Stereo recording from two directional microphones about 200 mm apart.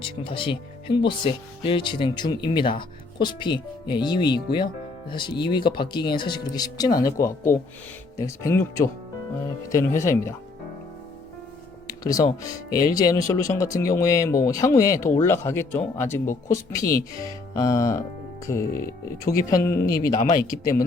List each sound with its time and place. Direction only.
0.0 s speech: 25° left (ahead or behind)
11.9 s speech: 20° left (ahead or behind)